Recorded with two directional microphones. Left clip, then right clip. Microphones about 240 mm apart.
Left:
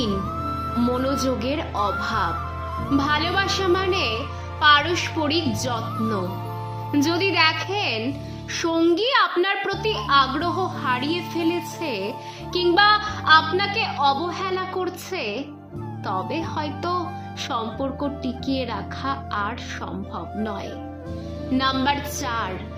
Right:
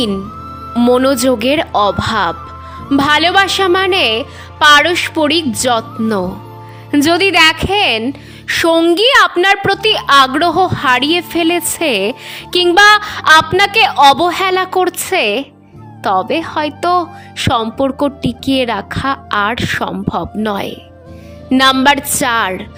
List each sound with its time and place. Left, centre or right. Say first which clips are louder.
0.4 s music: right 1 dB; centre
0.9 s speech: right 14 dB; right